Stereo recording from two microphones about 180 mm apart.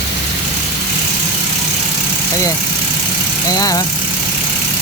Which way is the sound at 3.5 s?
20° left (ahead or behind).